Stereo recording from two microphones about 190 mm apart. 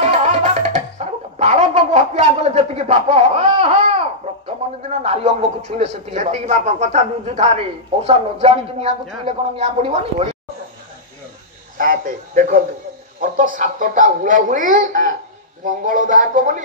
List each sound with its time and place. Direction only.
0.0 s music: 35° right (ahead or behind)
4.8 s a man's voice: 35° right (ahead or behind)
11.8 s speech: 45° right (ahead or behind)